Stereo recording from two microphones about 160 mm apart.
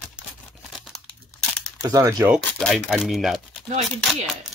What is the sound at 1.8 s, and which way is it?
Speech, 20° right (ahead or behind).